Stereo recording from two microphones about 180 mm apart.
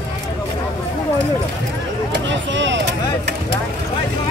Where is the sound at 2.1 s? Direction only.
90° right.